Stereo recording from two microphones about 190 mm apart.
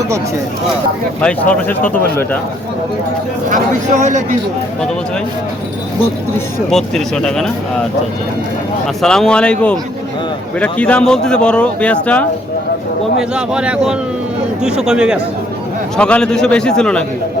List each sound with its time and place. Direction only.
1.2 s speech: 5° left (ahead or behind)
3.5 s speech: 40° right (ahead or behind)
6.7 s a man's voice: 5° left (ahead or behind)
9.0 s a man's voice: 5° left (ahead or behind)
13.1 s a man's voice: 5° right (ahead or behind)